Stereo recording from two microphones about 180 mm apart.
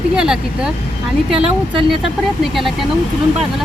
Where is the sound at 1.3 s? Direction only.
30° right (ahead or behind).